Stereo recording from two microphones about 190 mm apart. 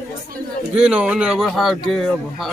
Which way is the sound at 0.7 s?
5° right (ahead or behind).